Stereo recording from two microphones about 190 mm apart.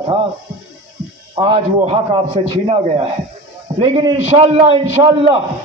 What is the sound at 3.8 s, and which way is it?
A man's voice, 30° right (ahead or behind).